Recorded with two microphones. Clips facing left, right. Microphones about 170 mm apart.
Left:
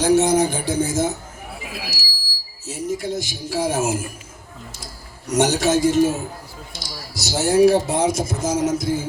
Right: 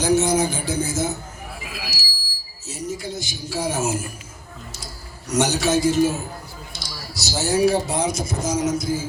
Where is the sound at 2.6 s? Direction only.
55° left (ahead or behind).